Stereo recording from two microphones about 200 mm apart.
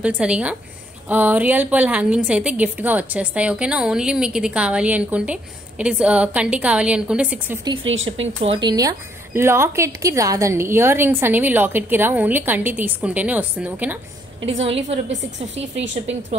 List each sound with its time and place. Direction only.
0.0 s a woman's voice: 5° right (ahead or behind)
7.7 s speech: 75° right (ahead or behind)
8.4 s a woman's voice: 25° right (ahead or behind); by 13.9 s 10° right (ahead or behind)
14.6 s a woman's voice: 30° right (ahead or behind)
15.0 s a woman's voice: 65° right (ahead or behind)